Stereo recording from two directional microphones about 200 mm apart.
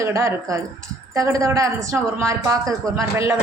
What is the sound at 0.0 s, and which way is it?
Dishes, 15° right (ahead or behind).